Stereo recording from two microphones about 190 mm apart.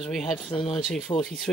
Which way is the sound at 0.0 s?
Centre (ahead or behind).